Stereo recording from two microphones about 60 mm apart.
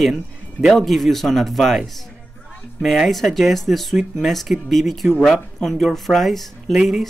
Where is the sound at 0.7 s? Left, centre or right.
Centre.